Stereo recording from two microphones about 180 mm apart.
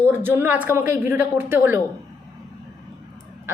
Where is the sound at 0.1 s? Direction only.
10° right (ahead or behind).